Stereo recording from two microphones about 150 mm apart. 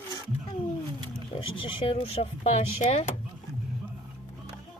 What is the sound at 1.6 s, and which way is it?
Speech, 40° left (ahead or behind).